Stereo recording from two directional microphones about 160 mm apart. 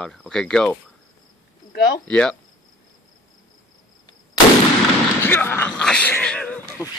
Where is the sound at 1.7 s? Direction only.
70° left (ahead or behind).